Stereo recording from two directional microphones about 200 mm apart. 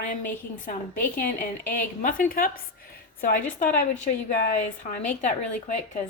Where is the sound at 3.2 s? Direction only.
40° left (ahead or behind).